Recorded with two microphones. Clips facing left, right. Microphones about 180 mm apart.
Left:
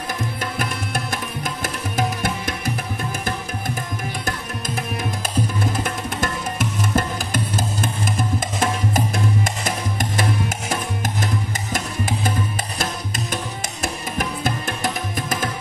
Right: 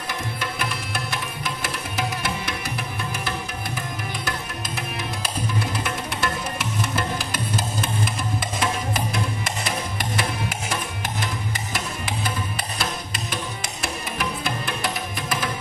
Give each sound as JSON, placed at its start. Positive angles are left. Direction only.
{"t": 0.4, "sound": "music", "side_deg": 45}
{"t": 5.7, "sound": "music", "side_deg": 45}
{"t": 14.1, "sound": "music", "side_deg": 45}